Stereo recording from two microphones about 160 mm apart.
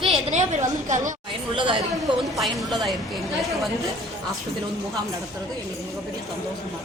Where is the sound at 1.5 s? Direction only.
30° right (ahead or behind).